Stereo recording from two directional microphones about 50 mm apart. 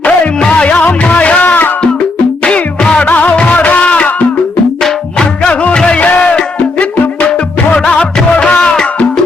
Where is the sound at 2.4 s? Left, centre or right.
Left.